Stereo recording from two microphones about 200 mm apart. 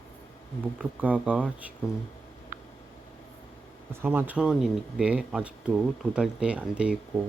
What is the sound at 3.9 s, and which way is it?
Speech, 10° right (ahead or behind).